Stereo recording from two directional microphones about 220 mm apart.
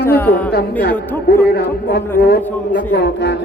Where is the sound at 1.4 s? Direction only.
45° left (ahead or behind).